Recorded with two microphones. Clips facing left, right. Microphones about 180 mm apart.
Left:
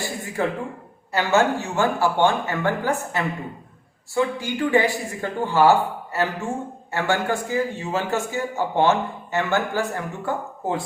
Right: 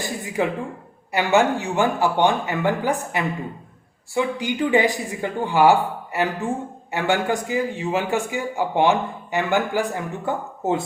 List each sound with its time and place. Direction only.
0.4 s a man's voice: 15° right (ahead or behind)